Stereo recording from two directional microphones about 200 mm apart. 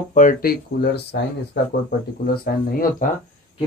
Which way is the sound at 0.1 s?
40° left (ahead or behind).